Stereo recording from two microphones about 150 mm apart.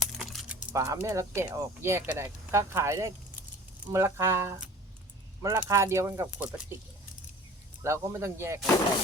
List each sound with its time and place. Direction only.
0.0 s keys jangling: centre (ahead or behind)
0.7 s speech: 20° right (ahead or behind)
7.8 s speech: 20° right (ahead or behind)